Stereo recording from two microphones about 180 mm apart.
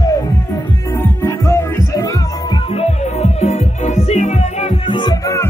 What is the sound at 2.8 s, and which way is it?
Music, 35° left (ahead or behind).